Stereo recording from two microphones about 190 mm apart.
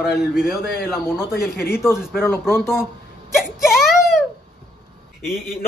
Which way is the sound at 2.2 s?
10° left (ahead or behind).